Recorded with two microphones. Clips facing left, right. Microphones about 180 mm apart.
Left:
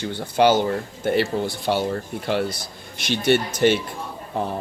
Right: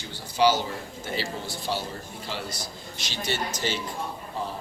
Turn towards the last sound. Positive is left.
turn(degrees=60)  # may be behind; listen again after turning